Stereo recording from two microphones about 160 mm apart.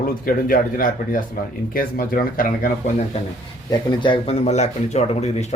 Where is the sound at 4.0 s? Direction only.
35° left (ahead or behind).